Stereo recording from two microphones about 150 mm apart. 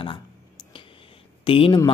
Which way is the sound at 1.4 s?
35° left (ahead or behind).